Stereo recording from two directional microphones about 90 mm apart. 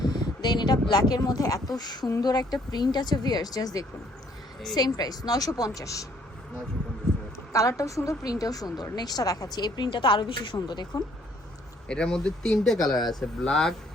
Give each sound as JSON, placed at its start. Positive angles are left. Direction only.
{"t": 0.0, "sound": "speech", "side_deg": 50}
{"t": 7.5, "sound": "a woman's voice", "side_deg": 35}
{"t": 11.9, "sound": "speech", "side_deg": 10}